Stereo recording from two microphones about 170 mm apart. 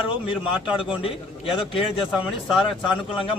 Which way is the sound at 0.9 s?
30° left (ahead or behind).